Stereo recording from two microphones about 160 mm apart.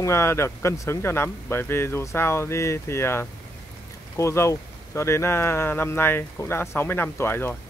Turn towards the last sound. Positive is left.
turn(degrees=15)  # may be behind; listen again after turning